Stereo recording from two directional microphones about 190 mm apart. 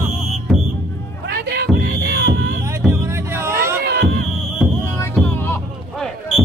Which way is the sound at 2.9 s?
15° right (ahead or behind).